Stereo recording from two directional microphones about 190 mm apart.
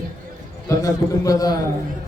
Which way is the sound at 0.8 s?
20° left (ahead or behind).